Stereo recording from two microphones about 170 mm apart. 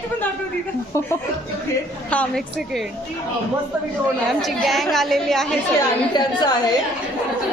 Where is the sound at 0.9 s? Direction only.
15° left (ahead or behind).